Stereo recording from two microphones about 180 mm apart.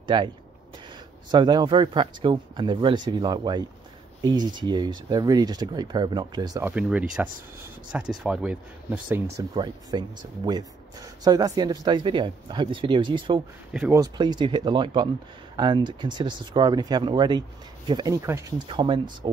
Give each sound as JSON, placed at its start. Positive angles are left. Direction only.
{"t": 0.0, "sound": "speech", "side_deg": -25}
{"t": 1.3, "sound": "speech", "side_deg": -25}
{"t": 6.6, "sound": "speech", "side_deg": -5}
{"t": 9.4, "sound": "speech", "side_deg": -25}
{"t": 13.7, "sound": "speech", "side_deg": -15}
{"t": 18.7, "sound": "speech", "side_deg": -25}